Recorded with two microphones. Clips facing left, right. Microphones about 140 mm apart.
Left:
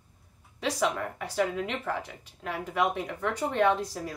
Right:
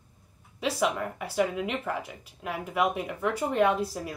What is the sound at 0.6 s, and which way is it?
Speech, 5° right (ahead or behind).